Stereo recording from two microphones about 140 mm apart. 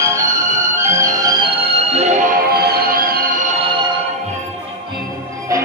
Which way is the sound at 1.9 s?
50° right (ahead or behind).